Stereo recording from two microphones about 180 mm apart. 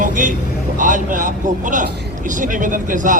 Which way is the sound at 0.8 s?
45° right (ahead or behind).